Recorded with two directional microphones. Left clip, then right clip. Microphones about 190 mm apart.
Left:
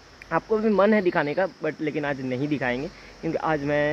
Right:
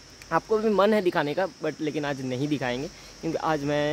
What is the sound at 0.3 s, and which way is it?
Speech, 20° right (ahead or behind).